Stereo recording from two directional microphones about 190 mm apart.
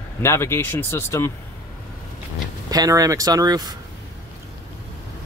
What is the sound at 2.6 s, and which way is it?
Speech, 20° right (ahead or behind).